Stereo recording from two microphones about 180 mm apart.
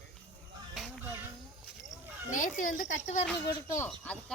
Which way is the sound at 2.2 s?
45° left (ahead or behind).